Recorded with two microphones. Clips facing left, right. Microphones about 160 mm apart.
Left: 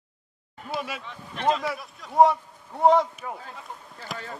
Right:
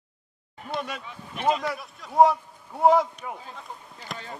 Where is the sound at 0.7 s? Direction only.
5° left (ahead or behind).